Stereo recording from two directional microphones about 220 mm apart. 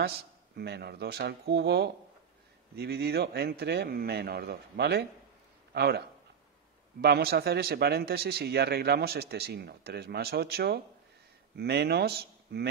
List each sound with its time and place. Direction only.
0.0 s a man's voice: 45° right (ahead or behind)